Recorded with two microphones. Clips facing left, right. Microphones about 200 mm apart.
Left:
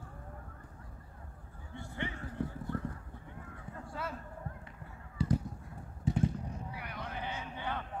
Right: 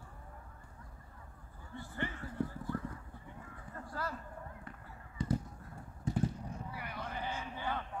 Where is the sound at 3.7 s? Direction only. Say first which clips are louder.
Even; centre (ahead or behind).